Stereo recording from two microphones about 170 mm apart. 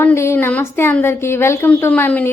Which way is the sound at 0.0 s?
15° left (ahead or behind).